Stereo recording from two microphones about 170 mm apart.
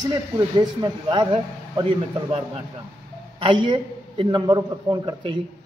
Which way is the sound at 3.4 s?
30° right (ahead or behind).